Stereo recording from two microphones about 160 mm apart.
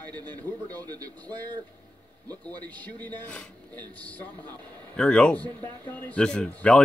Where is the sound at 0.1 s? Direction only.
25° right (ahead or behind).